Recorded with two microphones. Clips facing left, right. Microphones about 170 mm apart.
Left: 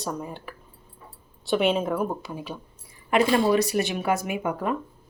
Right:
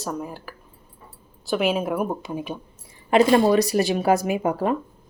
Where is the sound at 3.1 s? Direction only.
40° right (ahead or behind).